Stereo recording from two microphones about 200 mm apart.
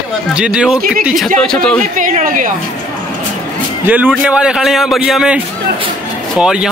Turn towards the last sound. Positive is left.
turn(degrees=-5)  # may be behind; listen again after turning